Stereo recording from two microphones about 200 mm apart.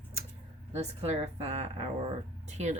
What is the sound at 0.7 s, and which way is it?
Speech, 35° right (ahead or behind).